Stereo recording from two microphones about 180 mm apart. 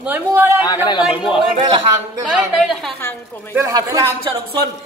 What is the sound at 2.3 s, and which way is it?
Speech, centre (ahead or behind).